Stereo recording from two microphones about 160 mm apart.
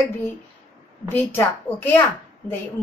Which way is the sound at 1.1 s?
15° left (ahead or behind).